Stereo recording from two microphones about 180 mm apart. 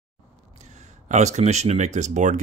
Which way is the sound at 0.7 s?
40° right (ahead or behind).